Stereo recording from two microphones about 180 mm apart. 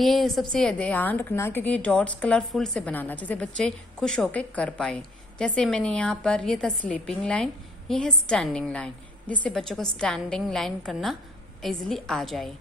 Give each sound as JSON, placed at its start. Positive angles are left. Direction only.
{"t": 0.0, "sound": "a woman's voice", "side_deg": 0}